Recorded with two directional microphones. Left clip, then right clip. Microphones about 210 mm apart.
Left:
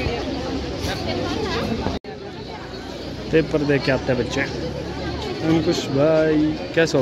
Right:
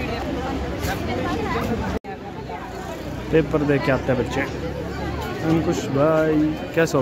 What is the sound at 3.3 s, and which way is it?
Speech, 10° right (ahead or behind).